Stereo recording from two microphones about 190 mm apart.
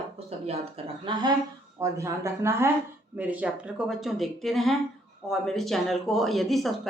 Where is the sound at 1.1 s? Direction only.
25° right (ahead or behind).